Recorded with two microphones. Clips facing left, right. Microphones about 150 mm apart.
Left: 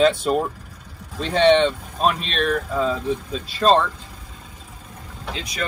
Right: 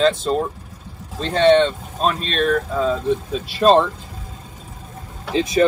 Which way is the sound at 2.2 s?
Centre (ahead or behind).